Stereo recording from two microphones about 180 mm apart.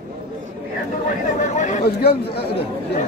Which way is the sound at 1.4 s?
40° left (ahead or behind).